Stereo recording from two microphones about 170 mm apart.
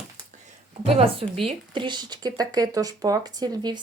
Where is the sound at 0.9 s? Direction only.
35° right (ahead or behind).